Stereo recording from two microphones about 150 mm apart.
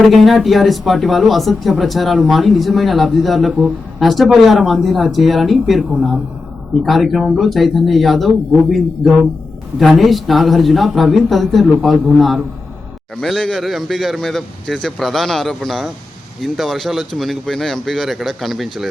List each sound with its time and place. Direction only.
0.1 s speech: centre (ahead or behind)
6.8 s speech: centre (ahead or behind)
9.7 s speech: centre (ahead or behind)